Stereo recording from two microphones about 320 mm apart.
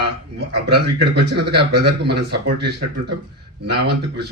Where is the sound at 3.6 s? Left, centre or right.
Right.